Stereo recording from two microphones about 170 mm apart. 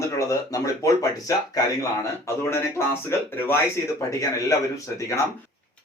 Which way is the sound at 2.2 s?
15° left (ahead or behind).